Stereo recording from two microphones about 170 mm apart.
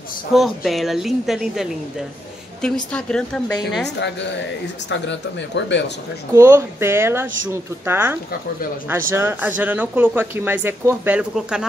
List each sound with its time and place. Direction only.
0.3 s a woman's voice: centre (ahead or behind)
4.8 s speech: 90° left
6.3 s speech: 15° right (ahead or behind)